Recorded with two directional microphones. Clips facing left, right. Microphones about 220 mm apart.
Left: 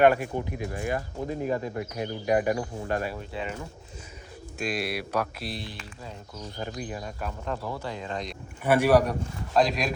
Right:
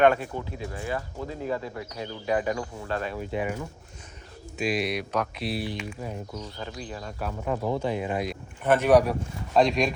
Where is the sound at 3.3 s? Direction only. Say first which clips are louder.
Right 5 dB; 15° right (ahead or behind).